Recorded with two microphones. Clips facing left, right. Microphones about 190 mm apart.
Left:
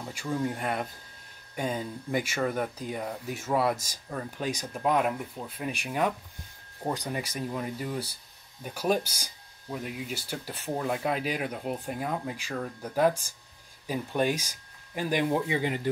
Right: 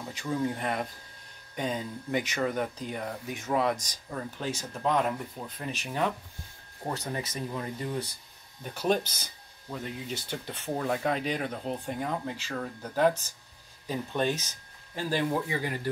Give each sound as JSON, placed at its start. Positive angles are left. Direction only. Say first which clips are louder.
{"t": 0.5, "sound": "speech", "louder": "even", "side_deg": 5}
{"t": 2.1, "sound": "speech", "louder": "even", "side_deg": 5}